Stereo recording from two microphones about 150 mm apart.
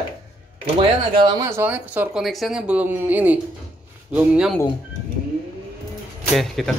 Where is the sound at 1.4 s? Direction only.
15° right (ahead or behind).